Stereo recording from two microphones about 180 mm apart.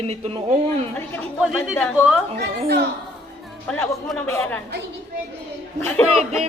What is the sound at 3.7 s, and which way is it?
Speech, 10° left (ahead or behind).